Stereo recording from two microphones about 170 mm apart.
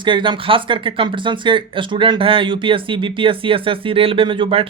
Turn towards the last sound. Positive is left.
turn(degrees=-30)  # may be behind; listen again after turning